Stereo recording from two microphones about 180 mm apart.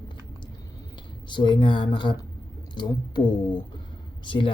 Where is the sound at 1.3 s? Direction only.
25° left (ahead or behind).